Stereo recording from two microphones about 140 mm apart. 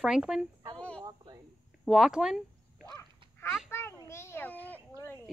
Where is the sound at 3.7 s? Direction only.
15° left (ahead or behind).